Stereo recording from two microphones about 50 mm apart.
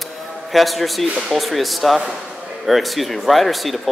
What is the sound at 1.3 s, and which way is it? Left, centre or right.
Speech, centre.